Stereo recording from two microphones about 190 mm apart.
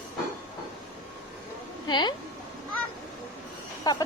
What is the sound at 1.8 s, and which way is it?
Speech, 20° left (ahead or behind).